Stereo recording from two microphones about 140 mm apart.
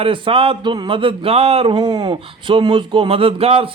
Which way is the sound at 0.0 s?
40° right (ahead or behind).